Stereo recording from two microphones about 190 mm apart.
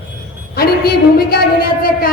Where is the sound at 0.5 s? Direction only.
55° left (ahead or behind).